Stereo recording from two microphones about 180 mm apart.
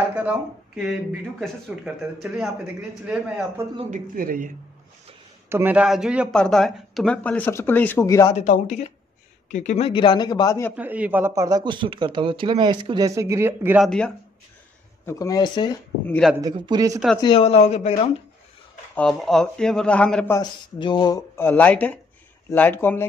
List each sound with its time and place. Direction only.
0.1 s speech: 5° right (ahead or behind)
3.9 s speech: 50° right (ahead or behind)
5.5 s speech: 10° right (ahead or behind); by 8.3 s 15° left (ahead or behind)
8.3 s speech: 40° left (ahead or behind); by 10.7 s 20° left (ahead or behind)
10.8 s speech: 10° right (ahead or behind)
13.8 s speech: 5° left (ahead or behind)
15.0 s speech: 20° left (ahead or behind)
16.1 s speech: centre (ahead or behind)
16.3 s speech: 20° right (ahead or behind)
17.2 s speech: 30° left (ahead or behind)
18.9 s speech: 5° left (ahead or behind)
20.3 s speech: 25° left (ahead or behind)